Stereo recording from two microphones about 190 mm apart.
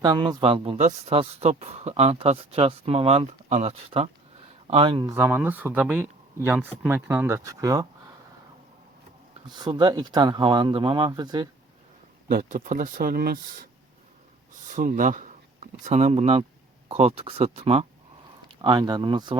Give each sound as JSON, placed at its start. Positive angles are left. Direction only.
{"t": 0.0, "sound": "a man's voice", "side_deg": -20}
{"t": 5.1, "sound": "speech", "side_deg": -10}
{"t": 9.5, "sound": "speech", "side_deg": -25}
{"t": 12.3, "sound": "speech", "side_deg": -50}
{"t": 14.7, "sound": "a man's voice", "side_deg": -45}